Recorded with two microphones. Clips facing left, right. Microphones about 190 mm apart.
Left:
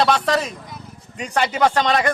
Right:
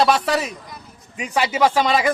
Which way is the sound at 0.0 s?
5° right (ahead or behind).